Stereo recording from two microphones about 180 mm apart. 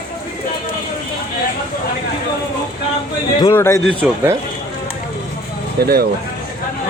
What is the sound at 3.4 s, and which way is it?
Speech, 15° left (ahead or behind).